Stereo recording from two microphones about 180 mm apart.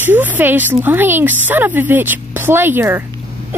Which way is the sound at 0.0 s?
10° right (ahead or behind).